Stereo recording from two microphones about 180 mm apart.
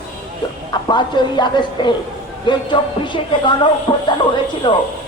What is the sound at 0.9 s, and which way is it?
Music, 25° left (ahead or behind).